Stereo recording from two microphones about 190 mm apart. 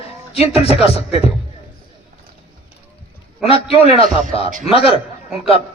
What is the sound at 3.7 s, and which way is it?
A man's voice, 30° left (ahead or behind).